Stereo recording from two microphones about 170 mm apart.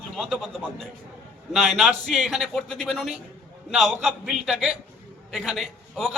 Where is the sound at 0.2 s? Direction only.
Centre (ahead or behind).